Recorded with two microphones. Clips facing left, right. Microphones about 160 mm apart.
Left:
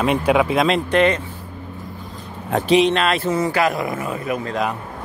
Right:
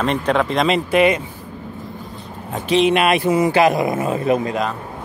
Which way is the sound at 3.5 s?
20° right (ahead or behind).